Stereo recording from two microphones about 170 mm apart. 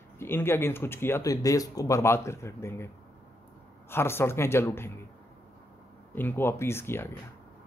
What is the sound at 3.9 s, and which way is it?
Speech, 15° left (ahead or behind).